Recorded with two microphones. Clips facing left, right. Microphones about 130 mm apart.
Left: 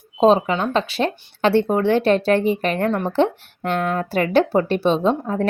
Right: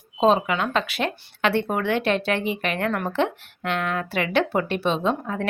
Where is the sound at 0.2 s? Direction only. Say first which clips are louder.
Left 4 dB; 35° left (ahead or behind).